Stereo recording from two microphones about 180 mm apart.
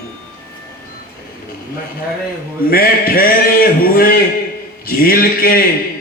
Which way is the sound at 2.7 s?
55° left (ahead or behind).